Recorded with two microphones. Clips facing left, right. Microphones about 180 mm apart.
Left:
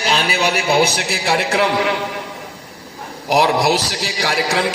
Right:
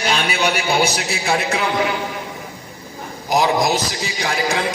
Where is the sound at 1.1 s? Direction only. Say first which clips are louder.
Left 2 dB; 70° left (ahead or behind).